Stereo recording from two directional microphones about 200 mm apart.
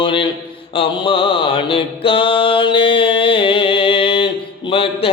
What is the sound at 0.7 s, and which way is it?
Mantra, 25° left (ahead or behind).